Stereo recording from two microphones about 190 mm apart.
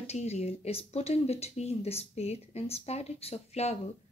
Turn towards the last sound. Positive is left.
turn(degrees=35)  # may be behind; listen again after turning